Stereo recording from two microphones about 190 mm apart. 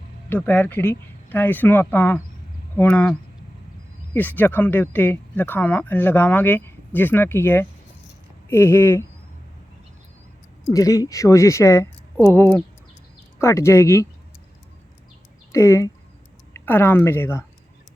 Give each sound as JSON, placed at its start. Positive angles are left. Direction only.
{"t": 0.3, "sound": "speech", "side_deg": 10}
{"t": 10.7, "sound": "speech", "side_deg": 20}
{"t": 15.5, "sound": "speech", "side_deg": 15}